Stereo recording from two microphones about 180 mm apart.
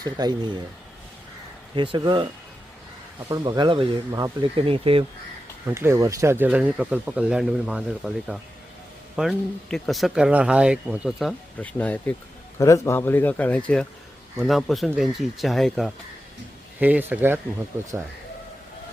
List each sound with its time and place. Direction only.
0.0 s speech: 20° right (ahead or behind)
1.7 s speech: 25° right (ahead or behind)
3.2 s speech: 20° right (ahead or behind)
5.7 s speech: 15° right (ahead or behind)